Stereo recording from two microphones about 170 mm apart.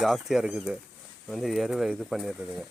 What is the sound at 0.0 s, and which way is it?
Speech, centre (ahead or behind).